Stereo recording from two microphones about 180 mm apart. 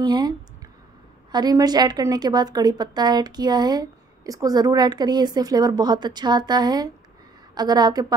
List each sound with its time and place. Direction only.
0.0 s a woman's voice: 25° right (ahead or behind)
1.3 s a woman's voice: 20° right (ahead or behind)